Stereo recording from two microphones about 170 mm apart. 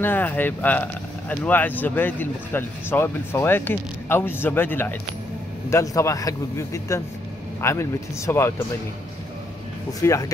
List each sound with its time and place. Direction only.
0.0 s speech: 10° left (ahead or behind)
9.9 s speech: 20° left (ahead or behind)